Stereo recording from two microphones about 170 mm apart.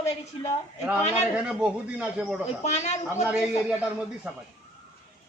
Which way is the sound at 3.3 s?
5° right (ahead or behind).